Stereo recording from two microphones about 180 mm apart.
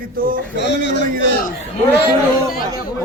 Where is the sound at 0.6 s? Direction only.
75° left (ahead or behind).